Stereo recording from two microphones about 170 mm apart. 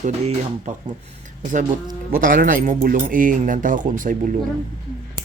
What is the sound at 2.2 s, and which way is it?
Speech, 50° right (ahead or behind).